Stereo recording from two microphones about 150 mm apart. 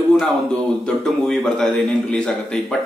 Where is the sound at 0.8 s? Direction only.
Centre (ahead or behind).